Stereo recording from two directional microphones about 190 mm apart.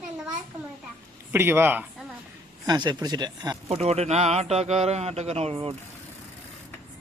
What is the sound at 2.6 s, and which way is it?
Speech, 20° right (ahead or behind).